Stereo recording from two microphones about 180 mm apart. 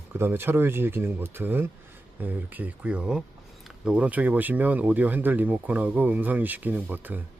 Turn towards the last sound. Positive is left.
turn(degrees=-10)  # may be behind; listen again after turning